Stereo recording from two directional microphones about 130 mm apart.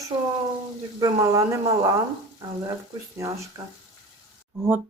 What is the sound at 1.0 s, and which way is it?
Speech, 25° right (ahead or behind).